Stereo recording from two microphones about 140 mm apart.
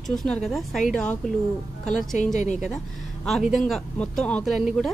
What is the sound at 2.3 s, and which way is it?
Speech, 60° left (ahead or behind).